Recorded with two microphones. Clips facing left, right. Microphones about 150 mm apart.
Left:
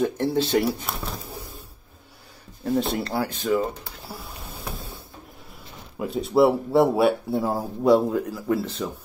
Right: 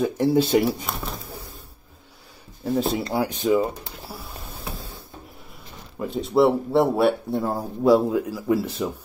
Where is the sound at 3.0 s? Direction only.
15° right (ahead or behind).